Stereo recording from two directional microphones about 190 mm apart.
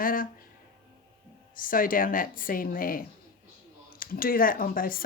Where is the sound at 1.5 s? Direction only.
45° left (ahead or behind).